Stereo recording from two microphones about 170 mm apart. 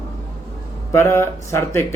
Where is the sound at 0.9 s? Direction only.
15° left (ahead or behind).